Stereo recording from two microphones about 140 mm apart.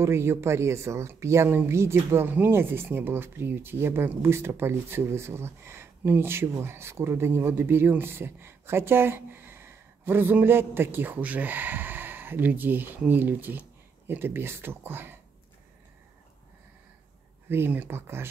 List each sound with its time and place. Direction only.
0.0 s speech: 20° right (ahead or behind)
17.5 s speech: 15° right (ahead or behind)